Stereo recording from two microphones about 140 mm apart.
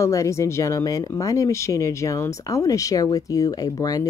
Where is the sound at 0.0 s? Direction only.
20° left (ahead or behind).